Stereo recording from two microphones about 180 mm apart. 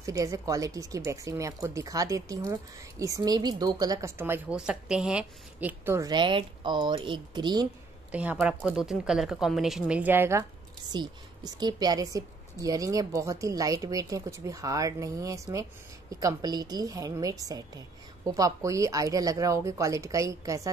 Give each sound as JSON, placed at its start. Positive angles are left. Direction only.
{"t": 0.0, "sound": "a woman's voice", "side_deg": -20}
{"t": 8.1, "sound": "a woman's voice", "side_deg": -10}